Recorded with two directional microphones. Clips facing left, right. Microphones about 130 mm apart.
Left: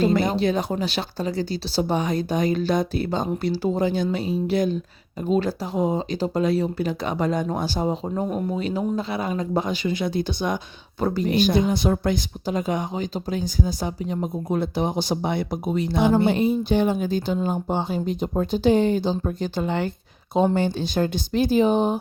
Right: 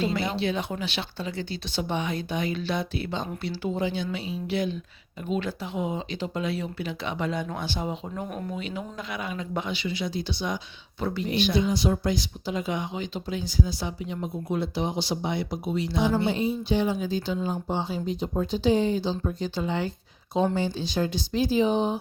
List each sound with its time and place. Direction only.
0.0 s speech: 45° left (ahead or behind); by 8.5 s 25° left (ahead or behind)
8.5 s speech: 40° left (ahead or behind)
11.0 s speech: 40° left (ahead or behind)